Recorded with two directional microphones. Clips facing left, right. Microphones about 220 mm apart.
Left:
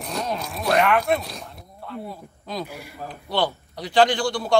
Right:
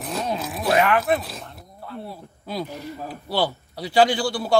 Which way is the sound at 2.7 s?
10° left (ahead or behind).